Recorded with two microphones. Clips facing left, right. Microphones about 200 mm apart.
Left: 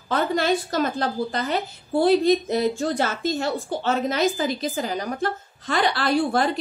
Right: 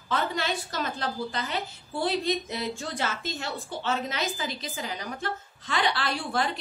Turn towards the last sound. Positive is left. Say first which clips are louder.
# left 9 dB
turn(degrees=45)  # may be behind; listen again after turning